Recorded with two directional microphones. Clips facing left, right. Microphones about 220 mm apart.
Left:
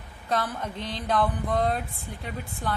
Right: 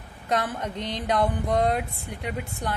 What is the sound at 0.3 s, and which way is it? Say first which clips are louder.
A woman's voice: right 2 dB; 20° right (ahead or behind).